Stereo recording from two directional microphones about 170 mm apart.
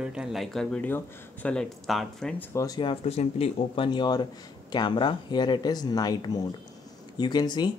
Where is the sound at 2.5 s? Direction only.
20° left (ahead or behind).